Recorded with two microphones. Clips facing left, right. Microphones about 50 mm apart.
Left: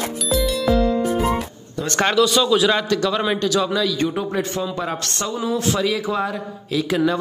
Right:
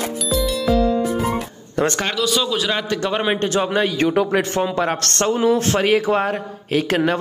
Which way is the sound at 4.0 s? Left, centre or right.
Right.